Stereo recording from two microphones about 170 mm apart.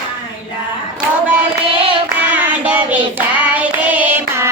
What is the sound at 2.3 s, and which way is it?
Child singing, 10° right (ahead or behind).